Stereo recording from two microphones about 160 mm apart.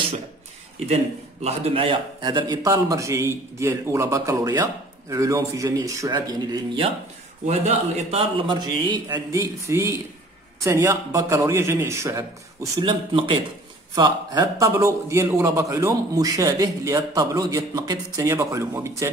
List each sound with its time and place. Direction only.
1.4 s a man's voice: 40° right (ahead or behind); by 6.8 s 25° right (ahead or behind)
7.4 s a man's voice: 40° right (ahead or behind); by 12.3 s 15° right (ahead or behind)
12.7 s a man's voice: 30° right (ahead or behind)